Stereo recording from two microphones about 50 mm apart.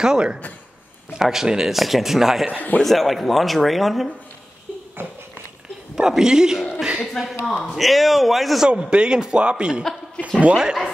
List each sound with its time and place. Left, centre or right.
0.0 s speech: centre
2.5 s a man's voice: left
2.8 s speech: centre
5.9 s speech: centre
8.9 s a man's voice: centre
10.2 s a sound: left
10.5 s speech: centre